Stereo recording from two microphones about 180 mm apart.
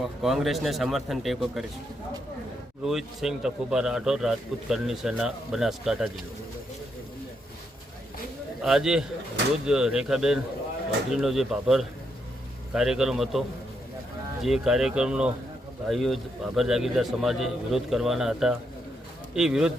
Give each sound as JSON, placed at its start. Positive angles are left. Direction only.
{"t": 0.2, "sound": "speech", "side_deg": 0}
{"t": 2.8, "sound": "speech", "side_deg": 0}
{"t": 8.6, "sound": "speech", "side_deg": -5}
{"t": 14.4, "sound": "speech", "side_deg": 0}